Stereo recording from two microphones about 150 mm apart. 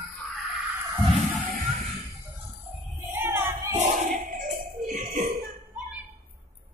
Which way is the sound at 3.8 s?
65° right (ahead or behind).